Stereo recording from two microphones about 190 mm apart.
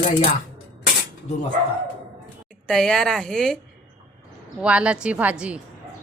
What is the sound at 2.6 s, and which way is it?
Speech, centre (ahead or behind).